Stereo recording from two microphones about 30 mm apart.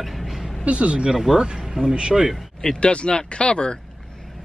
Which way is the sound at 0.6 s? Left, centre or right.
Right.